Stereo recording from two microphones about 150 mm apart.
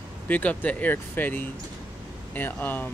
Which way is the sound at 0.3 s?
10° left (ahead or behind).